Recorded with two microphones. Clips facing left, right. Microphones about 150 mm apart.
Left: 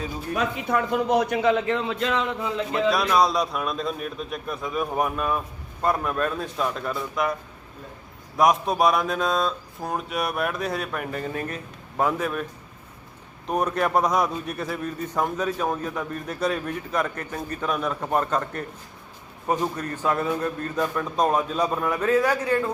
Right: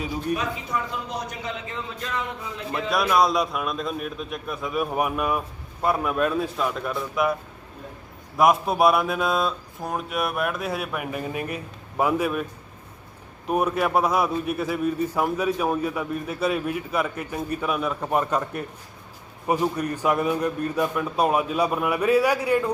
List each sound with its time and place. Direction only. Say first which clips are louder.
0.3 s a man's voice: left 4 dB; 55° left (ahead or behind); by 2.5 s 90° left
2.9 s speech: right 3 dB; centre (ahead or behind)
8.4 s speech: right 1 dB; 5° right (ahead or behind)
13.5 s a man's voice: right 1 dB; 5° right (ahead or behind)